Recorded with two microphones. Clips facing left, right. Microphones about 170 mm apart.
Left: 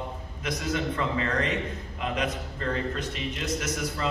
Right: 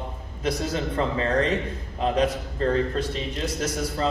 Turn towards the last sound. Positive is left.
turn(degrees=-35)  # may be behind; listen again after turning